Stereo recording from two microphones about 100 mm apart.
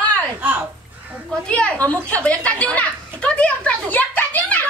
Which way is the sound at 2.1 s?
10° left (ahead or behind).